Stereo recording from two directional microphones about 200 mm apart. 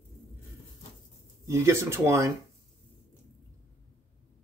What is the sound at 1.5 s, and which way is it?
Speech, 15° right (ahead or behind).